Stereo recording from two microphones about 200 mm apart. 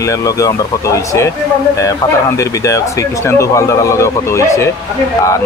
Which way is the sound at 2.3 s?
15° left (ahead or behind).